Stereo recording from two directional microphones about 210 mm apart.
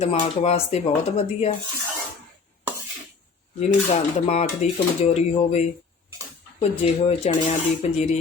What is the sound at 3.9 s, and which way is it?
Speech, 30° left (ahead or behind).